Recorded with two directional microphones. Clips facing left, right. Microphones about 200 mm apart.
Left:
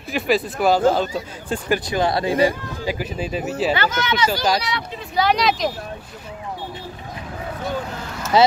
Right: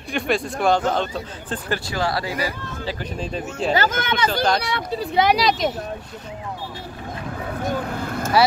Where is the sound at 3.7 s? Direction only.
50° right (ahead or behind).